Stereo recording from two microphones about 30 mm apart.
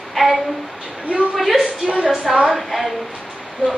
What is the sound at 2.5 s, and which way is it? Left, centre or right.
Speech, centre.